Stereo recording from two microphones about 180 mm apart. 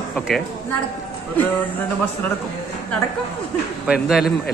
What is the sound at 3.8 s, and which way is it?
Speech, 5° right (ahead or behind).